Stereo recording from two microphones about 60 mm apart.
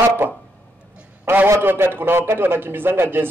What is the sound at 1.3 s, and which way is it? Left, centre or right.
A man's voice, right.